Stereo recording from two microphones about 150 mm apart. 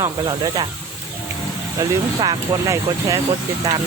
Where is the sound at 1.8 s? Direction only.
25° right (ahead or behind).